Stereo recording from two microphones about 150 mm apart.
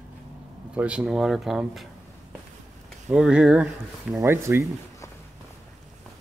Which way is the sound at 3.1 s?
5° right (ahead or behind).